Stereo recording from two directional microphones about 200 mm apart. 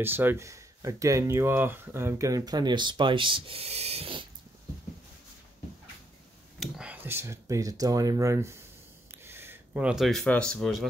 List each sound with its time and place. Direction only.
0.0 s speech: 10° right (ahead or behind); by 4.3 s 25° right (ahead or behind)
6.6 s speech: 5° right (ahead or behind)